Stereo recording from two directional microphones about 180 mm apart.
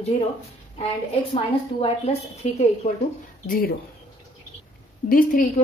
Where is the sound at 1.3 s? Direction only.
30° left (ahead or behind).